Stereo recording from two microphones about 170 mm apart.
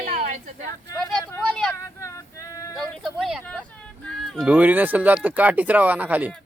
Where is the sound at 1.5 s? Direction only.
5° left (ahead or behind).